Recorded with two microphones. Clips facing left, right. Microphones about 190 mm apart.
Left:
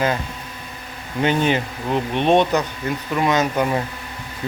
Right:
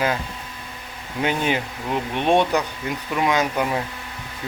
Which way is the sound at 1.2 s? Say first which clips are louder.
Left 4 dB; 5° right (ahead or behind).